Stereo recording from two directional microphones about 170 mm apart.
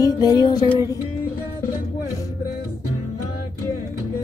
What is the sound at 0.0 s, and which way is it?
Music, 25° left (ahead or behind).